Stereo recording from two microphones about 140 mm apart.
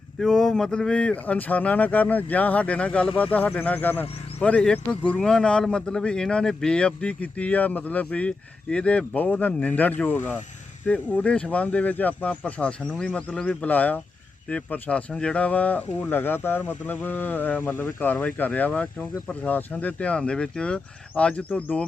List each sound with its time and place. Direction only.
0.2 s speech: 5° left (ahead or behind)